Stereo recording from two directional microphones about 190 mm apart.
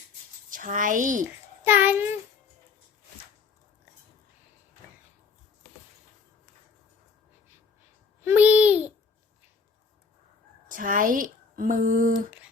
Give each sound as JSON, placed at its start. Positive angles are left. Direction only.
{"t": 0.5, "sound": "a child's voice", "side_deg": -45}
{"t": 1.6, "sound": "a child's voice", "side_deg": -10}
{"t": 8.2, "sound": "a child's voice", "side_deg": -10}
{"t": 10.7, "sound": "a woman's voice", "side_deg": -45}